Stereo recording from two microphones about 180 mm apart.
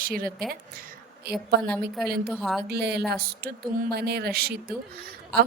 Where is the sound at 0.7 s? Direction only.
55° right (ahead or behind).